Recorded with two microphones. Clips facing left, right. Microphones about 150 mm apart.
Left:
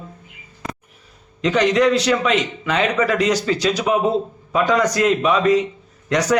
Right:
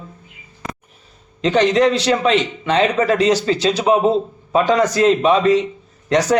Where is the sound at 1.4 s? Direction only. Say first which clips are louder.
Right 2 dB; 30° right (ahead or behind).